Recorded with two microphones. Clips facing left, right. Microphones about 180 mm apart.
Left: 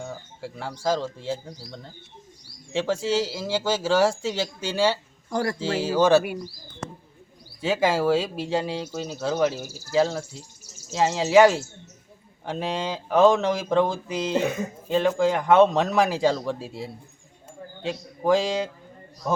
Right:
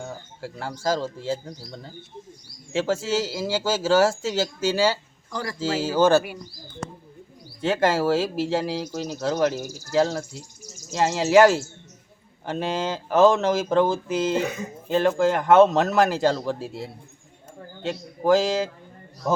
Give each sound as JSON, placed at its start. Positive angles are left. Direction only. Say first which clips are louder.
{"t": 0.0, "sound": "speech", "louder": "even", "side_deg": 0}
{"t": 5.3, "sound": "speech", "louder": "left 6 dB", "side_deg": 45}
{"t": 5.5, "sound": "speech", "louder": "right 3 dB", "side_deg": 0}
{"t": 7.6, "sound": "speech", "louder": "right 1 dB", "side_deg": 0}